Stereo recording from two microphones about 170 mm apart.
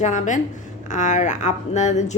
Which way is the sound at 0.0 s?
45° left (ahead or behind).